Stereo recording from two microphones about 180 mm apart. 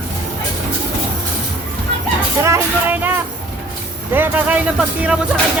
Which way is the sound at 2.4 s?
10° right (ahead or behind).